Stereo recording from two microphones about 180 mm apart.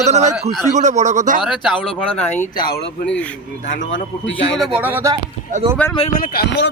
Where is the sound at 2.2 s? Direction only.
35° left (ahead or behind).